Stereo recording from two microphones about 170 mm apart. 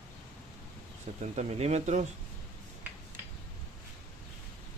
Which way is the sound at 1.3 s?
40° right (ahead or behind).